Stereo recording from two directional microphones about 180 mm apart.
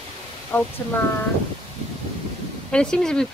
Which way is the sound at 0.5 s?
10° left (ahead or behind).